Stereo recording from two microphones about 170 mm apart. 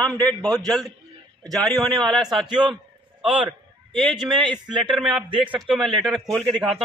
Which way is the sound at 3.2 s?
30° right (ahead or behind).